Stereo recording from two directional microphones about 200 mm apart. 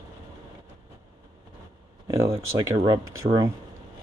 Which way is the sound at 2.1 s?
15° right (ahead or behind).